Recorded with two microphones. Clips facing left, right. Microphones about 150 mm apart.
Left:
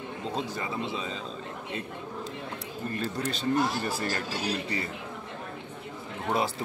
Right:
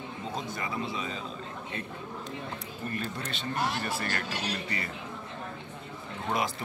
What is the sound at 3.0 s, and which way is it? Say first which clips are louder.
Speech: left 5 dB; 35° left (ahead or behind).